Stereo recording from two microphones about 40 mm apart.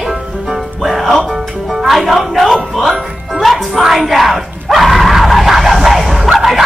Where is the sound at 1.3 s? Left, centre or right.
Centre.